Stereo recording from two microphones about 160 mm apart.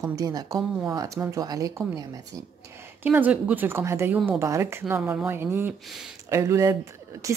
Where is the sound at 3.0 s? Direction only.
10° right (ahead or behind).